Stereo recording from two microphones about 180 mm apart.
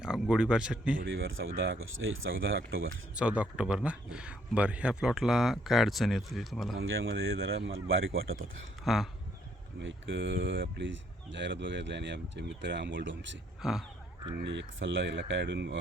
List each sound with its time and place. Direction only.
0.0 s speech: 5° right (ahead or behind)
1.0 s speech: 90° right
3.2 s speech: 5° right (ahead or behind)
6.7 s speech: 90° right
8.8 s speech: centre (ahead or behind)
9.8 s speech: 90° right
13.6 s speech: centre (ahead or behind)
14.4 s speech: 85° right